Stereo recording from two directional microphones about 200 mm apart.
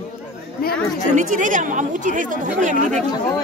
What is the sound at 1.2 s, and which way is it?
A woman's voice, 40° right (ahead or behind).